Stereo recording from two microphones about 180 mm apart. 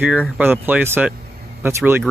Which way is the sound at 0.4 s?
10° right (ahead or behind).